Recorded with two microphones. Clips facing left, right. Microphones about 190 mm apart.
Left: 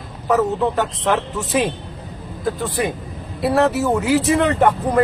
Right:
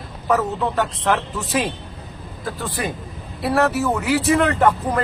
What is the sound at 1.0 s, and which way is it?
Speech, 20° left (ahead or behind).